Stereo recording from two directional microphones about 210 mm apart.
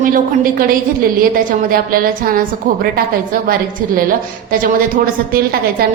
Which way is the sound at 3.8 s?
45° right (ahead or behind).